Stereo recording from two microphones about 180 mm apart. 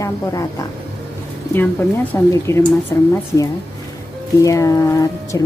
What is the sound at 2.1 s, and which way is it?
Speech, 15° left (ahead or behind).